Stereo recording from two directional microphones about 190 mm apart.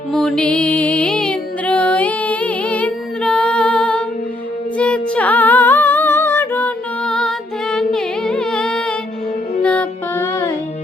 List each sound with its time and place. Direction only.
0.1 s music: centre (ahead or behind)